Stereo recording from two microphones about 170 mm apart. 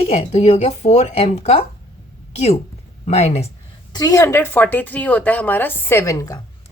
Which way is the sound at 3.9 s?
25° left (ahead or behind).